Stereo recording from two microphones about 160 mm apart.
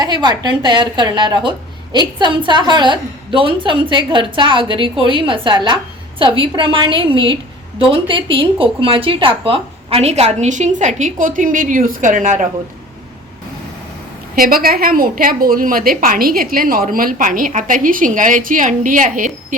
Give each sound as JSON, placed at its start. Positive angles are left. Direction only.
{"t": 0.0, "sound": "a woman's voice", "side_deg": -25}
{"t": 14.3, "sound": "a woman's voice", "side_deg": -65}